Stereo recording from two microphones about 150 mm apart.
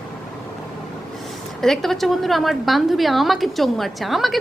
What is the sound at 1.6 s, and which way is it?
A woman's voice, centre (ahead or behind).